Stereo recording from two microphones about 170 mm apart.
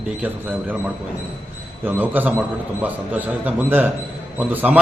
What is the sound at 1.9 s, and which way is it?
A man's voice, 10° right (ahead or behind).